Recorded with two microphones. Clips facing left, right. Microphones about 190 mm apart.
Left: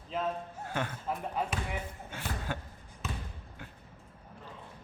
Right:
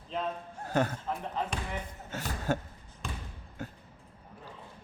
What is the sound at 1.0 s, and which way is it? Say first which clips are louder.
Speech: even; 5° left (ahead or behind).